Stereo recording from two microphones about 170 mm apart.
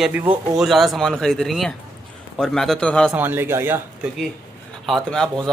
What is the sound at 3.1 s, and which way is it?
Speech, 10° right (ahead or behind).